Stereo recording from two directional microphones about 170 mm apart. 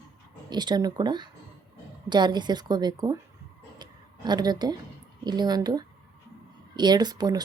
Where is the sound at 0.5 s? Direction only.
25° right (ahead or behind).